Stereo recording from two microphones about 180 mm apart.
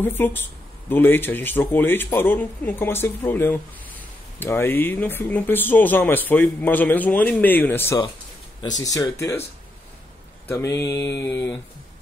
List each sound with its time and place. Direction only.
0.0 s speech: 10° left (ahead or behind)
10.5 s speech: 15° left (ahead or behind)